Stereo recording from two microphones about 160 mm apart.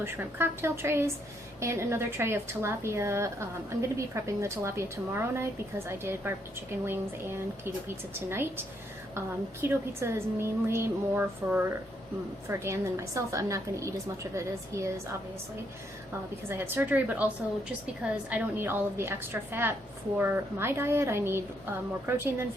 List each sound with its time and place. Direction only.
0.0 s a woman's voice: 15° right (ahead or behind)
16.5 s a woman's voice: 15° right (ahead or behind)